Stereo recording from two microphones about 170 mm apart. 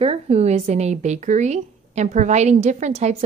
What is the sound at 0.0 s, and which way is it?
A woman's voice, 35° right (ahead or behind).